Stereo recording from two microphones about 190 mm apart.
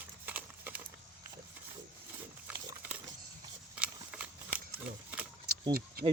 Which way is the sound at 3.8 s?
5° right (ahead or behind).